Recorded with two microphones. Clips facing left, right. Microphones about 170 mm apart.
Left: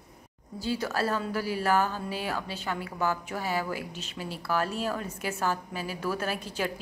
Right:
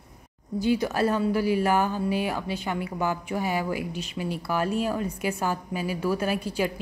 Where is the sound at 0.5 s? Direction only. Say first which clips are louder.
Right 6 dB; 15° right (ahead or behind).